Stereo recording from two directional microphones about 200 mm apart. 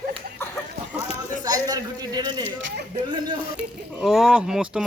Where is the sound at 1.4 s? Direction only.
20° right (ahead or behind).